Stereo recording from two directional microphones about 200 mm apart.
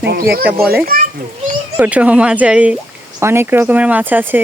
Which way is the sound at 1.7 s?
5° right (ahead or behind).